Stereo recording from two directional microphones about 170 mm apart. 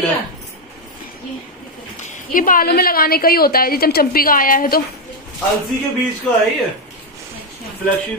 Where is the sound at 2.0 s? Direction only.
55° left (ahead or behind).